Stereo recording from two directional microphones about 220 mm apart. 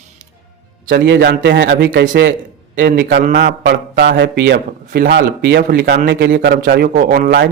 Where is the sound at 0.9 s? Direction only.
45° right (ahead or behind).